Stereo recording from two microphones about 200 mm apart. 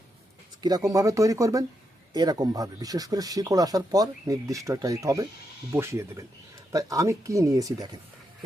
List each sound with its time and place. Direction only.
0.6 s speech: 20° right (ahead or behind)